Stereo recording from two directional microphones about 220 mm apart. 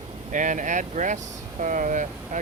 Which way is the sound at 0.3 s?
35° right (ahead or behind).